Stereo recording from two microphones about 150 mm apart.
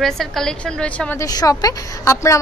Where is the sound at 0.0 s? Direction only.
Centre (ahead or behind).